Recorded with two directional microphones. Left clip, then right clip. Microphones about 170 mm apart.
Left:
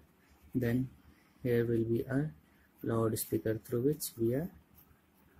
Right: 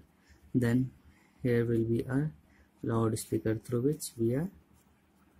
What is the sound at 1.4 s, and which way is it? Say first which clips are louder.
Speech: right 2 dB; 20° right (ahead or behind).